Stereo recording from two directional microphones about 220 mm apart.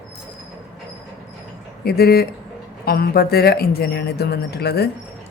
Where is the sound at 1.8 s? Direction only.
45° left (ahead or behind).